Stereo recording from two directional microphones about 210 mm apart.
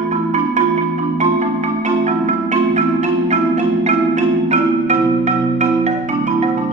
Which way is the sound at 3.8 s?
35° right (ahead or behind).